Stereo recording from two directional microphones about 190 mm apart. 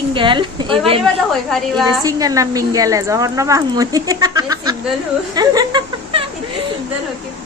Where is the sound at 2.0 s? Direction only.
20° right (ahead or behind).